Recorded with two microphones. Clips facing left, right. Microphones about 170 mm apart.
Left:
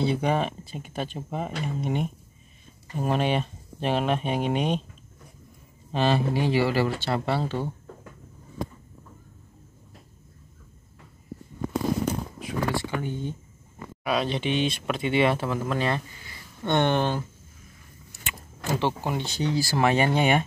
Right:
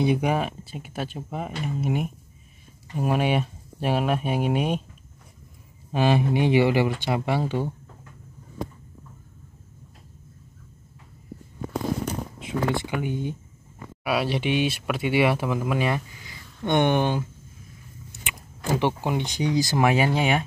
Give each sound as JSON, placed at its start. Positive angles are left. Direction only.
{"t": 0.0, "sound": "speech", "side_deg": -10}
{"t": 5.9, "sound": "speech", "side_deg": -10}
{"t": 12.4, "sound": "a sound", "side_deg": -25}
{"t": 12.9, "sound": "speech", "side_deg": -10}
{"t": 18.2, "sound": "speech", "side_deg": -15}
{"t": 19.9, "sound": "speech", "side_deg": -5}